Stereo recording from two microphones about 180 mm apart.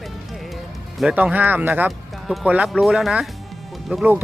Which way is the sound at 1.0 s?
5° right (ahead or behind).